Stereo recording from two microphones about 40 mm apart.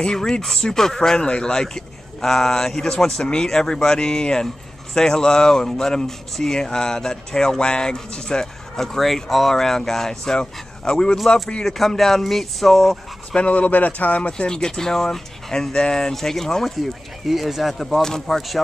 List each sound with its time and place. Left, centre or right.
0.0 s speech: centre
1.2 s speech: left
2.2 s speech: centre
11.6 s speech: centre
13.4 s speech: left
14.3 s speech: centre
15.5 s speech: left
17.3 s speech: centre